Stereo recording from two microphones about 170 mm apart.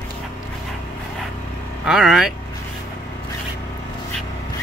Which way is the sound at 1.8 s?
5° right (ahead or behind).